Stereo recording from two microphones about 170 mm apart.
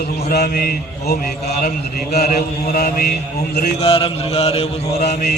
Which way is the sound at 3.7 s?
35° left (ahead or behind).